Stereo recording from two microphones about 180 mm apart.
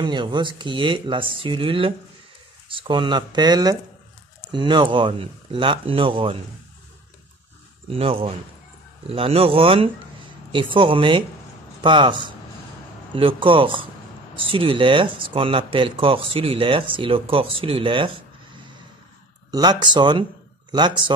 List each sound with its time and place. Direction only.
0.0 s speech: 25° right (ahead or behind)
7.9 s a man's voice: 30° right (ahead or behind)